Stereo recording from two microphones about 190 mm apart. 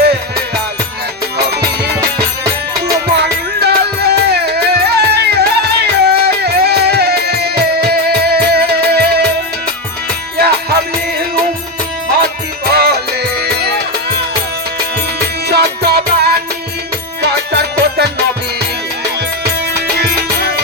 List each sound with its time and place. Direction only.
1.4 s music: 55° right (ahead or behind)
2.0 s music: 15° right (ahead or behind)
3.1 s music: 60° right (ahead or behind)
10.3 s music: 55° right (ahead or behind)
12.7 s music: 60° right (ahead or behind)
15.4 s music: 60° right (ahead or behind)